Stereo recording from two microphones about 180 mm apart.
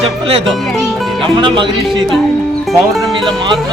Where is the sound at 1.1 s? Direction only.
25° right (ahead or behind).